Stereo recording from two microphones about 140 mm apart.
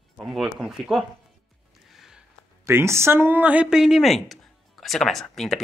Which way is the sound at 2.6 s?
20° right (ahead or behind).